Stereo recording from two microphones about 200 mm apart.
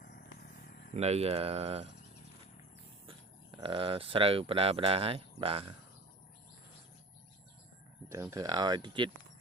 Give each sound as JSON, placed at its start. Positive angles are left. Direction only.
{"t": 0.0, "sound": "vehicle", "side_deg": 50}
{"t": 0.9, "sound": "speech", "side_deg": -30}
{"t": 3.1, "sound": "speech", "side_deg": -25}
{"t": 8.1, "sound": "speech", "side_deg": -15}